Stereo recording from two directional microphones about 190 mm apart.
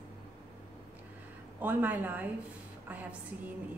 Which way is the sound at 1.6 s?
10° right (ahead or behind).